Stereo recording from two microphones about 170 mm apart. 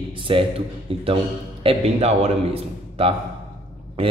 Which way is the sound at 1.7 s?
35° right (ahead or behind).